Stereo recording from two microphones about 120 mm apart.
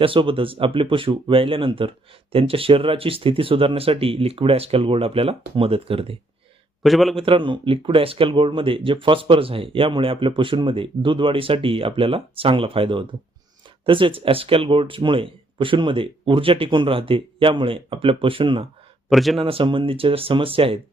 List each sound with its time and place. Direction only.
0.0 s speech: 45° right (ahead or behind)
6.8 s a man's voice: centre (ahead or behind)
7.2 s speech: 45° right (ahead or behind)
19.0 s speech: centre (ahead or behind)
19.4 s speech: 50° right (ahead or behind)